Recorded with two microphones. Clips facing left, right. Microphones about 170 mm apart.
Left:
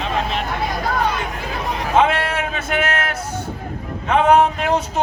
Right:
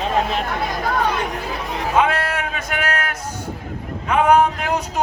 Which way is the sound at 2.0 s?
25° left (ahead or behind).